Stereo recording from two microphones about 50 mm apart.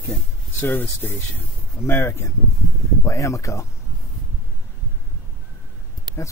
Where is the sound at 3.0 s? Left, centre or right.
Left.